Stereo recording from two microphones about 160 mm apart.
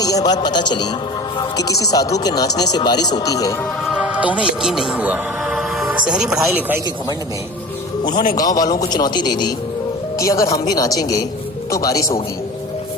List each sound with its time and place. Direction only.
0.0 s a man's voice: 25° left (ahead or behind)
3.6 s a man's voice: 5° right (ahead or behind)
8.4 s a man's voice: 25° left (ahead or behind)